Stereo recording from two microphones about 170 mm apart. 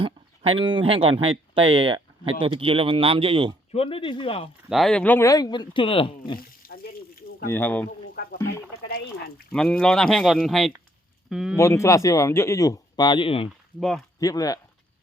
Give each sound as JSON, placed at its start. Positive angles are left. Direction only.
{"t": 0.0, "sound": "speech", "side_deg": -30}
{"t": 3.7, "sound": "speech", "side_deg": 35}
{"t": 4.7, "sound": "speech", "side_deg": 0}
{"t": 6.7, "sound": "a sound", "side_deg": 65}
{"t": 7.5, "sound": "speech", "side_deg": 10}
{"t": 7.9, "sound": "a sound", "side_deg": 60}
{"t": 9.5, "sound": "speech", "side_deg": 5}
{"t": 11.5, "sound": "speech", "side_deg": 15}
{"t": 13.7, "sound": "speech", "side_deg": 0}
{"t": 14.2, "sound": "speech", "side_deg": 20}